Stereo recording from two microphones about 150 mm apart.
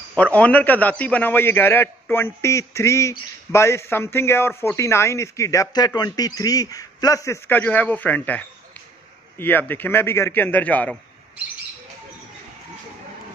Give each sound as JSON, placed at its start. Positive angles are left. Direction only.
{"t": 0.1, "sound": "a man's voice", "side_deg": 10}